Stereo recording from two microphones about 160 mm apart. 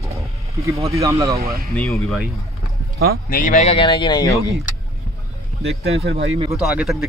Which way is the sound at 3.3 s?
55° left (ahead or behind).